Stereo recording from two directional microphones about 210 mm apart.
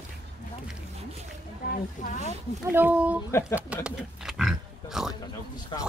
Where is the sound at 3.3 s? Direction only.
15° left (ahead or behind).